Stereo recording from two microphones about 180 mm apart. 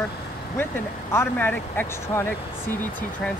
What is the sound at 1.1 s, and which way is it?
Speech, 10° left (ahead or behind).